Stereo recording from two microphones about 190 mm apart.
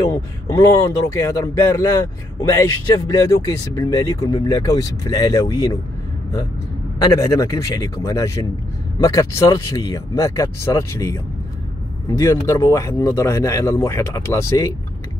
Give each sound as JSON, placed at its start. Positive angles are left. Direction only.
{"t": 0.0, "sound": "speech", "side_deg": 15}
{"t": 3.1, "sound": "speech", "side_deg": 15}
{"t": 7.1, "sound": "speech", "side_deg": 15}